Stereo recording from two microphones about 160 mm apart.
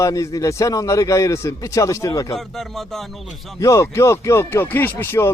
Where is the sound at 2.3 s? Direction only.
Centre (ahead or behind).